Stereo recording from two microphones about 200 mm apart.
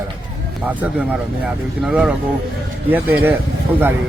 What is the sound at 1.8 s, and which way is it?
Speech, 5° right (ahead or behind).